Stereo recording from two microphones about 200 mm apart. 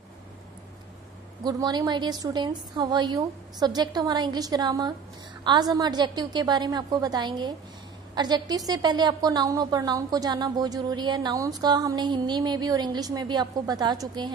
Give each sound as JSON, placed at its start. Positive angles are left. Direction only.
{"t": 1.4, "sound": "a woman's voice", "side_deg": -20}